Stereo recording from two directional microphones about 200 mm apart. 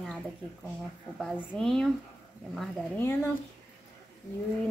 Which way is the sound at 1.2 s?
Centre (ahead or behind).